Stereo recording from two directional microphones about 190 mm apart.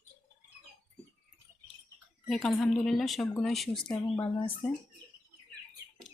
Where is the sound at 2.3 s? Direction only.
Centre (ahead or behind).